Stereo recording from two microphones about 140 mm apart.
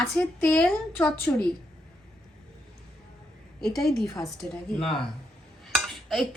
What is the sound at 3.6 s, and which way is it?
Speech, centre (ahead or behind).